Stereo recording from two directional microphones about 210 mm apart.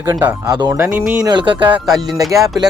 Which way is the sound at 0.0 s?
10° right (ahead or behind).